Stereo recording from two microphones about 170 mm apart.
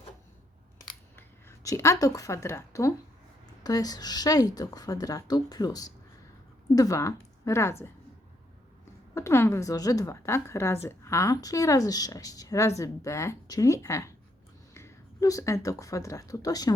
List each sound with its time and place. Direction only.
1.1 s a woman's voice: 15° left (ahead or behind)
9.1 s a woman's voice: 15° left (ahead or behind)